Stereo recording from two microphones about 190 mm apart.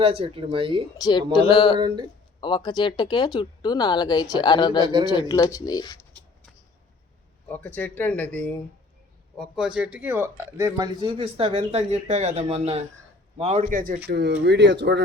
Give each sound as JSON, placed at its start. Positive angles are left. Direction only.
{"t": 0.0, "sound": "speech", "side_deg": -30}
{"t": 0.9, "sound": "speech", "side_deg": 20}
{"t": 7.4, "sound": "speech", "side_deg": 10}
{"t": 14.1, "sound": "speech", "side_deg": -60}